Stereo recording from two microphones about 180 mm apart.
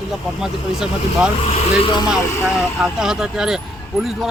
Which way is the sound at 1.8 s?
25° left (ahead or behind).